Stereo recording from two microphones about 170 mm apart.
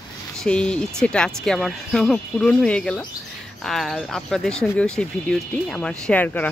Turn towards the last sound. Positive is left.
turn(degrees=10)  # may be behind; listen again after turning